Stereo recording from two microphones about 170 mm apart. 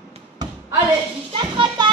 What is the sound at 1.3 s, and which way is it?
Children playing, 25° right (ahead or behind).